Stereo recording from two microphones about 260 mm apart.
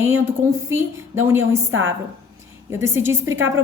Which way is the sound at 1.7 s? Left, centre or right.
Right.